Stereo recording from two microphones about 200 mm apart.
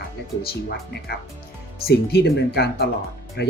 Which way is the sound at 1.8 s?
55° left (ahead or behind).